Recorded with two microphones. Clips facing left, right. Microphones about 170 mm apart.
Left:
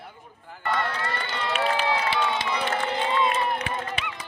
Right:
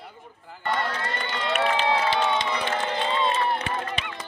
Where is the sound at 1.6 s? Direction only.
25° right (ahead or behind).